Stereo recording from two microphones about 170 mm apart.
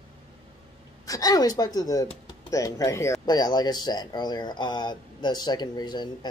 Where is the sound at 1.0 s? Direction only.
20° left (ahead or behind).